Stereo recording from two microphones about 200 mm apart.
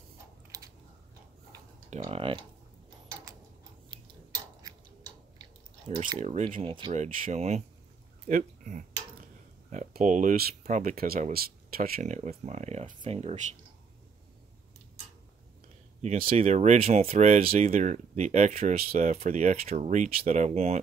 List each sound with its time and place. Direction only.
1.9 s speech: 30° right (ahead or behind)
5.4 s chewing: 25° right (ahead or behind)
6.1 s speech: 35° right (ahead or behind)
16.0 s speech: 35° right (ahead or behind)